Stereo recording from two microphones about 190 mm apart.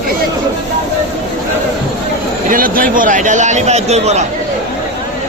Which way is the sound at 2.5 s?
50° right (ahead or behind).